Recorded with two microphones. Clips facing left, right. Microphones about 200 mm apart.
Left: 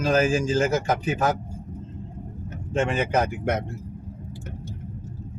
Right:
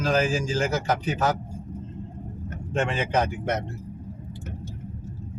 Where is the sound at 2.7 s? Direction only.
5° left (ahead or behind).